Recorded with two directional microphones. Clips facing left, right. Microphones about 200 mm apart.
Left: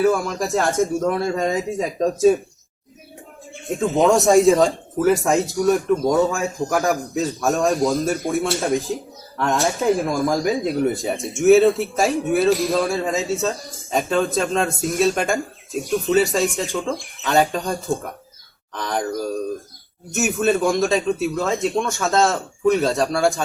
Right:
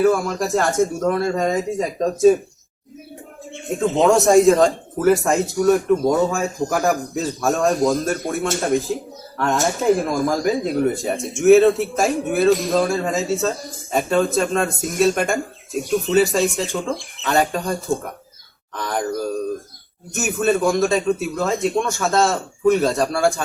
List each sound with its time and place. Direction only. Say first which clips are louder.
0.0 s a man's voice: right 1 dB; centre (ahead or behind)
4.0 s a man's voice: right 1 dB; centre (ahead or behind)
17.9 s speech: right 1 dB; 15° left (ahead or behind)
18.8 s a man's voice: right 1 dB; centre (ahead or behind)